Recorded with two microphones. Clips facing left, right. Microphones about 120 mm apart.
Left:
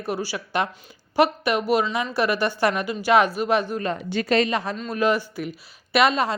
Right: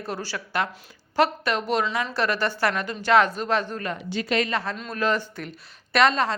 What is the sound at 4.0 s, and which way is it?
Speech, 55° left (ahead or behind).